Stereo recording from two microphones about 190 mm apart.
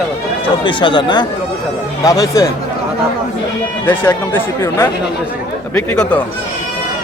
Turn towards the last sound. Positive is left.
turn(degrees=5)  # may be behind; listen again after turning